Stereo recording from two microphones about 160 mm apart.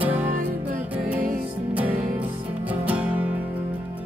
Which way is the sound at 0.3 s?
60° right (ahead or behind).